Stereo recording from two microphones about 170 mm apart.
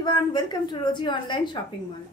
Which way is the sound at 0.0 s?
25° left (ahead or behind).